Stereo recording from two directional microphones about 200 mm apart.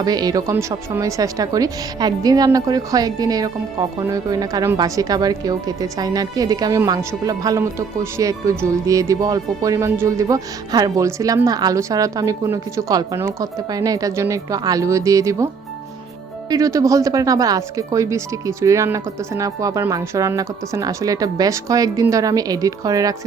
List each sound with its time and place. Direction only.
0.0 s speech: 20° right (ahead or behind)
16.5 s speech: 15° right (ahead or behind)